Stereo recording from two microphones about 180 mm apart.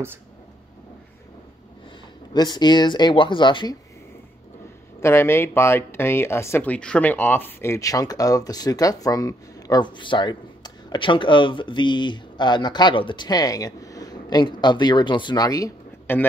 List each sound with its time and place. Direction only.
2.3 s speech: 25° left (ahead or behind)
5.0 s speech: 15° left (ahead or behind)